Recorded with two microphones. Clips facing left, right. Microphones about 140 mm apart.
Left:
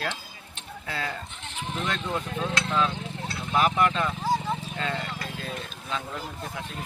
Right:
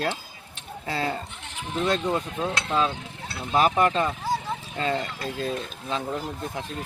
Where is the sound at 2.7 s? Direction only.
30° right (ahead or behind).